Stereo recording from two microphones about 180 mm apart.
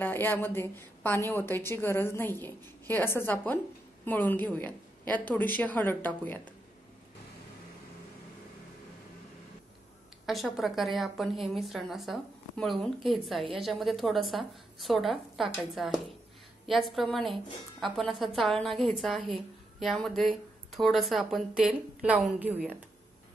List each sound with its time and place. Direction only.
0.0 s a woman's voice: 10° left (ahead or behind)
10.2 s a woman's voice: centre (ahead or behind)